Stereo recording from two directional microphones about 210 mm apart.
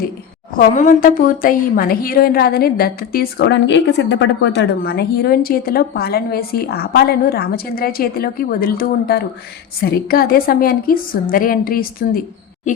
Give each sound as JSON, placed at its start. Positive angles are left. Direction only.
{"t": 0.5, "sound": "speech", "side_deg": 35}